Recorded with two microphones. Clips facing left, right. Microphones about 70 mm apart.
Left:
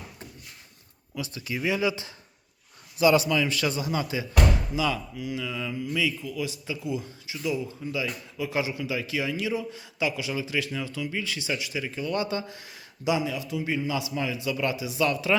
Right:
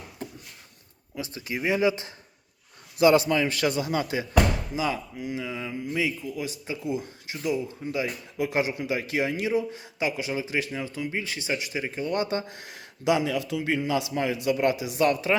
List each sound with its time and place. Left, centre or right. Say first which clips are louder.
1.1 s speech: even; right
4.7 s speech: left 1 dB; right